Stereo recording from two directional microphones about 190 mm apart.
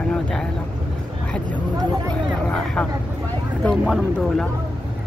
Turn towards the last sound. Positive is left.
turn(degrees=0)  # may be behind; listen again after turning